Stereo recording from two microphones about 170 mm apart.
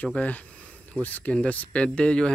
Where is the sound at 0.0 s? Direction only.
10° left (ahead or behind).